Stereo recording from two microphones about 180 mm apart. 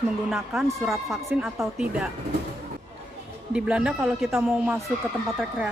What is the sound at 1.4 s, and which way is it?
Speech, 10° right (ahead or behind).